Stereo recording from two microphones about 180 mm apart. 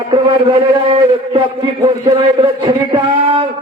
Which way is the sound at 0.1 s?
25° right (ahead or behind).